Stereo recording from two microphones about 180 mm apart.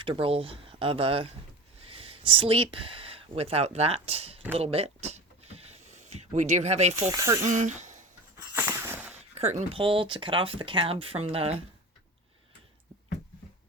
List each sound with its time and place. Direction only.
0.0 s speech: 30° right (ahead or behind)
4.5 s a sound: 35° right (ahead or behind)
7.1 s speech: 20° right (ahead or behind)
7.4 s speech: 45° right (ahead or behind)
8.5 s a sound: 10° right (ahead or behind)
9.1 s speech: 35° right (ahead or behind)